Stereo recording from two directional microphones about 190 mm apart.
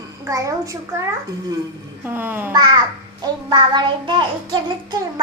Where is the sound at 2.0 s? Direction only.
10° right (ahead or behind).